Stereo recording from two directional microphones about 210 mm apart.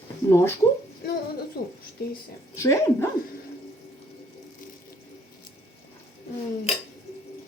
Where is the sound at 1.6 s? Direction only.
45° left (ahead or behind).